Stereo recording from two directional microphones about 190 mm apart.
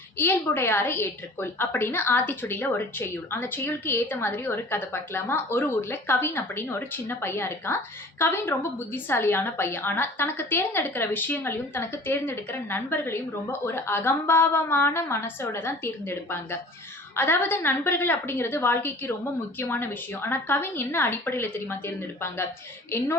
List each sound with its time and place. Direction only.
0.2 s a woman's voice: 10° left (ahead or behind)